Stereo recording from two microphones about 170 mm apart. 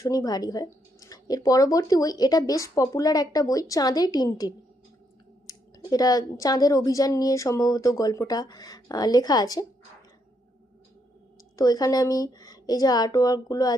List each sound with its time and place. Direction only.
0.0 s speech: 20° left (ahead or behind)
11.5 s speech: 25° left (ahead or behind)